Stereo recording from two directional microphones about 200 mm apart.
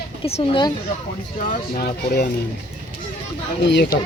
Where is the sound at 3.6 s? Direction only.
60° left (ahead or behind).